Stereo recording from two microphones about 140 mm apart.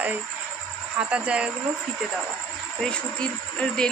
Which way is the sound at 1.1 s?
10° right (ahead or behind).